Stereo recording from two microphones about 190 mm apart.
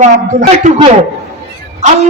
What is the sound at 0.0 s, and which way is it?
Speech, 40° right (ahead or behind).